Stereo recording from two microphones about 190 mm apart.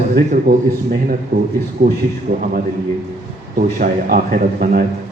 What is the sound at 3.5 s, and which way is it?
A man's voice, 50° right (ahead or behind).